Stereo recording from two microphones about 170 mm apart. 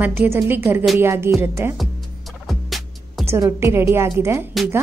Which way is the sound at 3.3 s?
15° right (ahead or behind).